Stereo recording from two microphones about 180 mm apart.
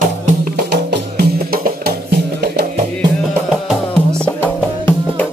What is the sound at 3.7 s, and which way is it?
Music, 5° left (ahead or behind).